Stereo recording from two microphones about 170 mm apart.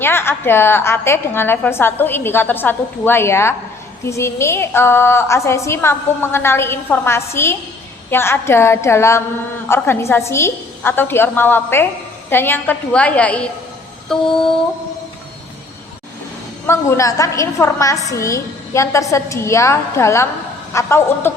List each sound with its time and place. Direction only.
0.0 s a woman's voice: 15° left (ahead or behind)
14.1 s a sound: 5° left (ahead or behind)
16.6 s a woman's voice: 15° left (ahead or behind)